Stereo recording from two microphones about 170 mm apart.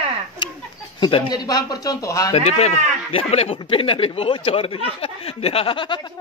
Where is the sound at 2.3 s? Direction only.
40° left (ahead or behind).